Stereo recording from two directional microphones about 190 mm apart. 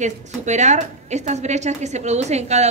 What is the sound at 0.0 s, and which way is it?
A woman's voice, 40° right (ahead or behind).